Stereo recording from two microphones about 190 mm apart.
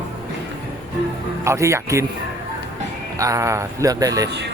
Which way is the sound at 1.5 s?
15° right (ahead or behind).